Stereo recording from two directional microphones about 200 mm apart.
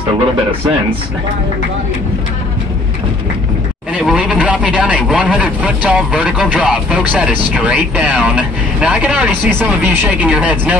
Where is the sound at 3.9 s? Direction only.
5° right (ahead or behind).